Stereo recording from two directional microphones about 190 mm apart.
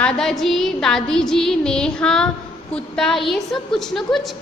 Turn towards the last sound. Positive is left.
turn(degrees=0)  # may be behind; listen again after turning